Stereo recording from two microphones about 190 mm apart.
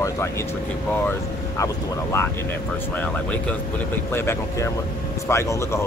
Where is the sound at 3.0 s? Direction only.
5° left (ahead or behind).